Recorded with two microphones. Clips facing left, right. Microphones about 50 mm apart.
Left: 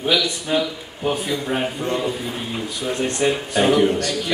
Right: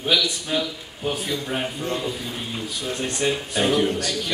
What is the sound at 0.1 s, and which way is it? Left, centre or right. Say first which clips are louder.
Speech: left 2 dB; centre.